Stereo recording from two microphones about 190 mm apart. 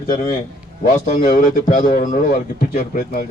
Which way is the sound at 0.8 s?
45° left (ahead or behind).